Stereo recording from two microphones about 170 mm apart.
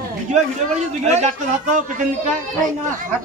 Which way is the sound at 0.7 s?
40° right (ahead or behind).